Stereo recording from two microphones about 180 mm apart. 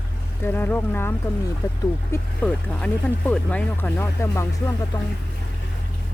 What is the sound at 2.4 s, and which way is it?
Speech, 5° left (ahead or behind).